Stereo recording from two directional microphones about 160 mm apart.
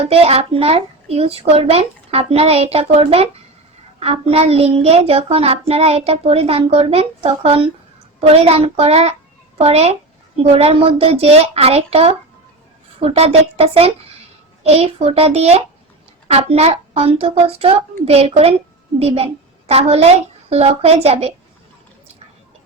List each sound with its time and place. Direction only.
0.1 s child singing: 40° right (ahead or behind)
18.9 s a woman's voice: 40° right (ahead or behind)